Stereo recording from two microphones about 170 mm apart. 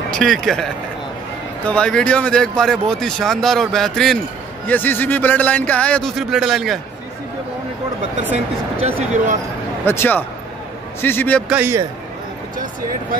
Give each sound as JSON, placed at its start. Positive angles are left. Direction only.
{"t": 0.1, "sound": "speech", "side_deg": 0}
{"t": 1.7, "sound": "speech", "side_deg": 5}
{"t": 8.8, "sound": "speech", "side_deg": -45}
{"t": 9.8, "sound": "speech", "side_deg": 10}
{"t": 11.4, "sound": "a man's voice", "side_deg": -10}